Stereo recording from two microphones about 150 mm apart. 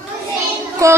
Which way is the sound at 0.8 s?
20° right (ahead or behind).